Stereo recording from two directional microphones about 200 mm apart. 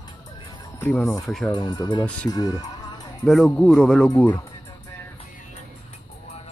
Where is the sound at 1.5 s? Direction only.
20° left (ahead or behind).